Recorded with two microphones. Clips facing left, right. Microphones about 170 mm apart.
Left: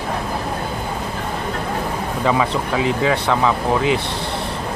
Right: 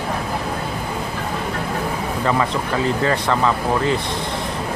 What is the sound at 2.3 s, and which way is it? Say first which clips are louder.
Speech: left 2 dB; 5° left (ahead or behind).